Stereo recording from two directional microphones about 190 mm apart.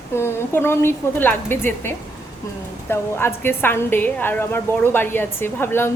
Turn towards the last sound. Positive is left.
turn(degrees=10)  # may be behind; listen again after turning